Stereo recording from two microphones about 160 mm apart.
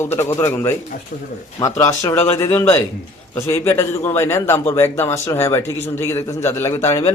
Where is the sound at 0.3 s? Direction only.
15° left (ahead or behind).